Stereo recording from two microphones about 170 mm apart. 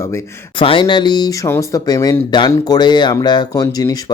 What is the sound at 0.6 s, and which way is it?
Speech, 30° left (ahead or behind).